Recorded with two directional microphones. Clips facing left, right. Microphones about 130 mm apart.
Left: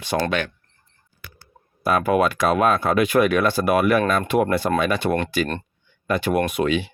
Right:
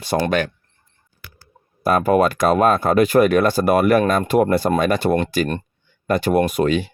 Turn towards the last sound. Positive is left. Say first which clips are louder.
# right 3 dB
turn(degrees=-40)  # may be behind; listen again after turning